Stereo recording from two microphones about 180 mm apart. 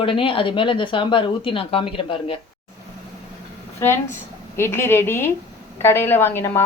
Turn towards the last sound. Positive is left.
turn(degrees=10)  # may be behind; listen again after turning